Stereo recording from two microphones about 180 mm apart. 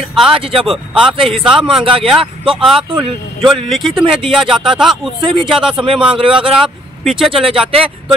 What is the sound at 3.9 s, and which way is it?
Speech, 30° right (ahead or behind).